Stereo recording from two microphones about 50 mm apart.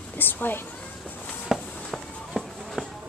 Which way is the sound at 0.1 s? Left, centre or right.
Left.